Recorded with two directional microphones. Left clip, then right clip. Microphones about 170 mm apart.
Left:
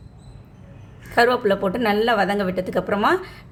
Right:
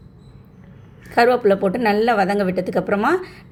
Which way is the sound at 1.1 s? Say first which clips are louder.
Right 3 dB; 5° right (ahead or behind).